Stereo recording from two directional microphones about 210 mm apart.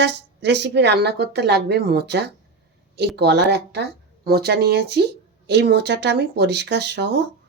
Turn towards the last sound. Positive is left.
turn(degrees=-55)  # may be behind; listen again after turning